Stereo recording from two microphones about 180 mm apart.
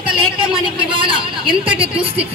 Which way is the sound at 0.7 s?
25° right (ahead or behind).